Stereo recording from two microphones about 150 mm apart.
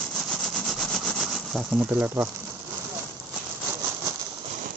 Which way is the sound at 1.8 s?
10° right (ahead or behind).